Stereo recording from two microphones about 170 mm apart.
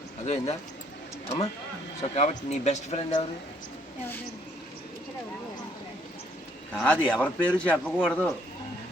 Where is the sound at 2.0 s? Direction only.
40° left (ahead or behind).